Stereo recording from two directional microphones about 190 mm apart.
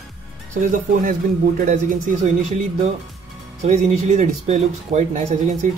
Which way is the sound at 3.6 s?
35° right (ahead or behind).